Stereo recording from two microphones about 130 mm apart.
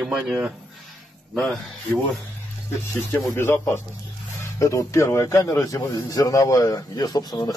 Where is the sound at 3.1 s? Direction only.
20° left (ahead or behind).